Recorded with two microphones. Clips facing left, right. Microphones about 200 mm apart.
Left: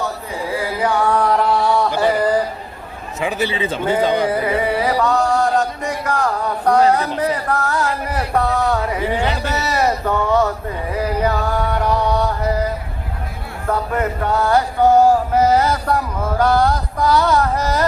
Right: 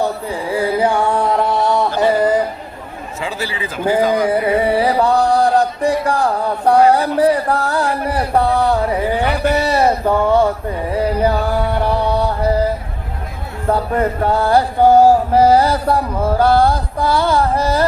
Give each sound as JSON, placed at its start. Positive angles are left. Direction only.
{"t": 0.5, "sound": "carnatic music", "side_deg": -30}
{"t": 2.0, "sound": "mantra", "side_deg": -25}
{"t": 3.2, "sound": "a man's voice", "side_deg": 20}
{"t": 4.4, "sound": "music", "side_deg": -30}
{"t": 13.7, "sound": "music", "side_deg": -30}